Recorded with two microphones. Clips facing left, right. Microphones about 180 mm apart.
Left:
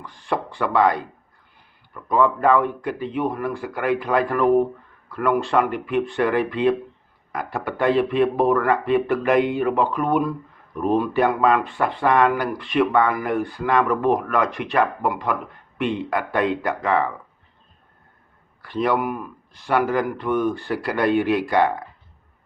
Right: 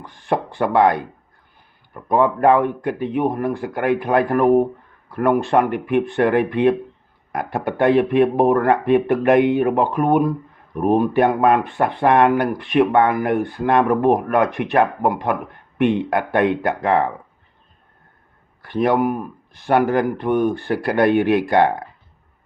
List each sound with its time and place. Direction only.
0.0 s speech: 55° right (ahead or behind)
18.6 s speech: 55° right (ahead or behind)